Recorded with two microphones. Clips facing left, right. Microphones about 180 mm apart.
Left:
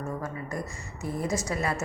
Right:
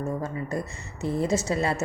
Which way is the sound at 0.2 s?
25° right (ahead or behind).